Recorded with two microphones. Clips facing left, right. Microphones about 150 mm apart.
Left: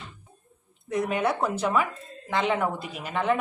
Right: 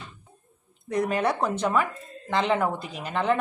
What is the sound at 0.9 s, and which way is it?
Speech, centre (ahead or behind).